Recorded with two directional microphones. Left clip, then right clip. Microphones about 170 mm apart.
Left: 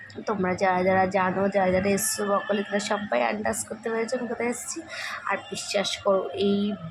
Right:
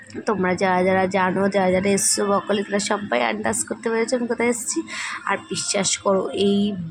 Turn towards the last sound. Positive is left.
turn(degrees=-25)  # may be behind; listen again after turning